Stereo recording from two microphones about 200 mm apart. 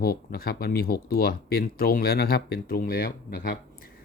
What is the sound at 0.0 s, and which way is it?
Speech, 45° left (ahead or behind).